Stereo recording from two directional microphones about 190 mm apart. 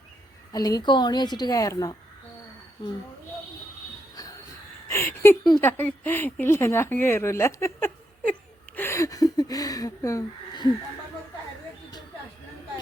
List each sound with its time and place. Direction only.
0.5 s a woman's voice: 20° left (ahead or behind)
4.1 s train: 20° left (ahead or behind)
4.9 s a sound: 15° left (ahead or behind)
5.6 s speech: 10° left (ahead or behind)